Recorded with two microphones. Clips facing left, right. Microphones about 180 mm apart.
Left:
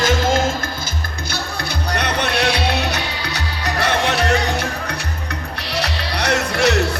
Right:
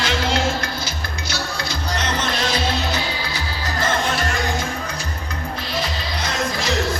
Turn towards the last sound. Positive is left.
turn(degrees=70)  # may be behind; listen again after turning